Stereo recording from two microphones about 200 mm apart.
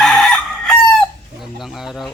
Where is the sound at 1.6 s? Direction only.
Centre (ahead or behind).